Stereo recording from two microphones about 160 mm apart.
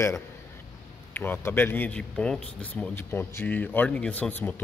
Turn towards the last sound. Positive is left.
turn(degrees=10)  # may be behind; listen again after turning